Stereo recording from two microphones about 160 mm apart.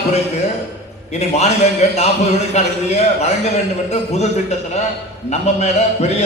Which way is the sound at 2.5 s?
45° left (ahead or behind).